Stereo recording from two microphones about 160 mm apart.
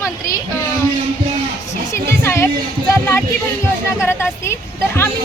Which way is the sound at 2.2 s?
15° left (ahead or behind).